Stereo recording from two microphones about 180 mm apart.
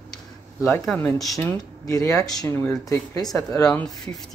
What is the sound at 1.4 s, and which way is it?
Speech, 15° left (ahead or behind).